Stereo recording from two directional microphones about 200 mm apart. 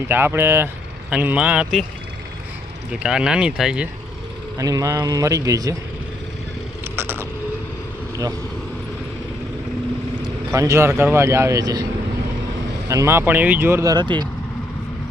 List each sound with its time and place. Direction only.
0.1 s speech: 10° right (ahead or behind)
2.9 s speech: 5° right (ahead or behind)
4.5 s speech: 15° right (ahead or behind)
6.8 s a sound: 10° right (ahead or behind)
10.2 s speech: 15° right (ahead or behind)
12.9 s speech: 15° right (ahead or behind)